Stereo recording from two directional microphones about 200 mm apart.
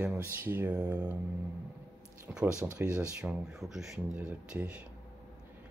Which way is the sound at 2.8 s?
10° right (ahead or behind).